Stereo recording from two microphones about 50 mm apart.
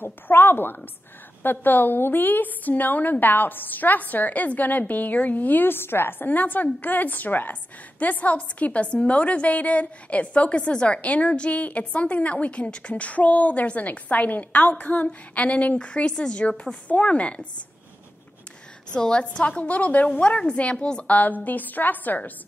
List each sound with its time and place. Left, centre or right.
0.0 s a woman's voice: left
18.9 s a woman's voice: centre
19.2 s a woman's voice: left
21.1 s a woman's voice: left